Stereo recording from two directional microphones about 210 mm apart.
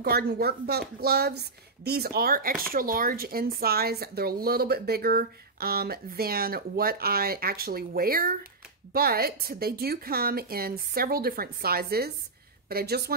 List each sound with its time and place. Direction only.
0.0 s speech: 50° right (ahead or behind)